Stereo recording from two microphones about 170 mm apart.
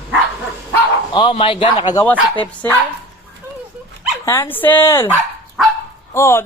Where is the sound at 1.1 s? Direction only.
30° left (ahead or behind).